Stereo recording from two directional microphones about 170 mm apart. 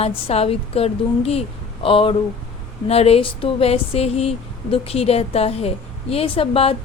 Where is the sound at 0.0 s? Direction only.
35° left (ahead or behind).